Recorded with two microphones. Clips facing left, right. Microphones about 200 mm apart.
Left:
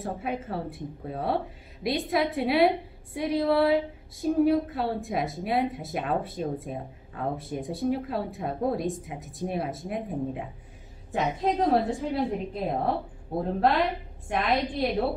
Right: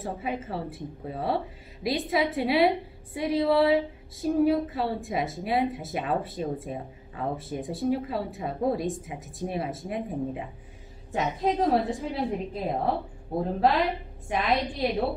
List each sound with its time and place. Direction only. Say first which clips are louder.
0.0 s a woman's voice: even; centre (ahead or behind)